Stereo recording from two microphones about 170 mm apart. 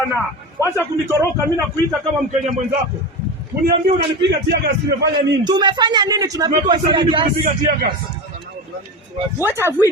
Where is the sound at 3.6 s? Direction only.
80° right.